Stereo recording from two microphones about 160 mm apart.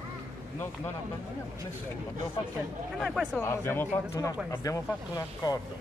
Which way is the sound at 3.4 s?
15° left (ahead or behind).